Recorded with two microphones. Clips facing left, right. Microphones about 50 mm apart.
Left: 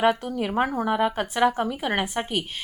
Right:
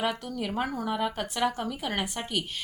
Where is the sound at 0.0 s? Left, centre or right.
Left.